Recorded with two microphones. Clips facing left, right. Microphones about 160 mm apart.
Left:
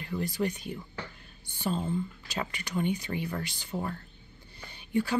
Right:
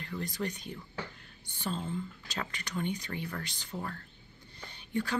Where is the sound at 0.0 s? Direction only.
10° left (ahead or behind).